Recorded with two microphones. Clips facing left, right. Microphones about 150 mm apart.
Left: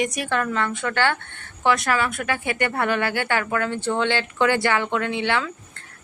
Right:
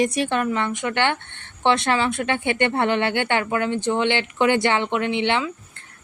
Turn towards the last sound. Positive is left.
turn(degrees=-20)  # may be behind; listen again after turning